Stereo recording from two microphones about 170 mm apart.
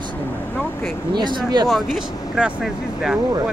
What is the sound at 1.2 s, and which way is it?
Speech, 25° right (ahead or behind).